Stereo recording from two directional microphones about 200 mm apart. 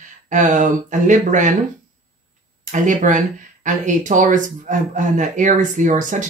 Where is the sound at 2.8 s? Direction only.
40° right (ahead or behind).